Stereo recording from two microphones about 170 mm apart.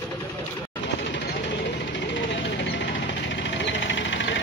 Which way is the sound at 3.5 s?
90° left.